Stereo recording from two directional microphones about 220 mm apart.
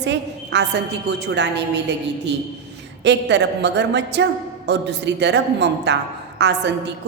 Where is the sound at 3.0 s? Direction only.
50° right (ahead or behind).